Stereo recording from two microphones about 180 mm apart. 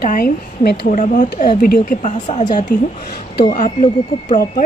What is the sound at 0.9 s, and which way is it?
Speech, 45° left (ahead or behind).